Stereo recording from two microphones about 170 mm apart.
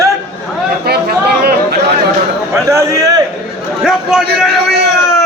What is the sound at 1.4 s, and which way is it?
Chatter, 75° right (ahead or behind).